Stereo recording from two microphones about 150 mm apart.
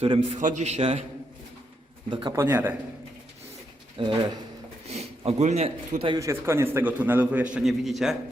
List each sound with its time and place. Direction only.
0.0 s a man's voice: 45° right (ahead or behind)
2.0 s speech: 30° right (ahead or behind)
2.3 s a man's voice: 15° right (ahead or behind)
3.9 s speech: 35° right (ahead or behind)
4.9 s a man's voice: 45° right (ahead or behind)
6.1 s a man's voice: 20° right (ahead or behind); by 8.1 s centre (ahead or behind)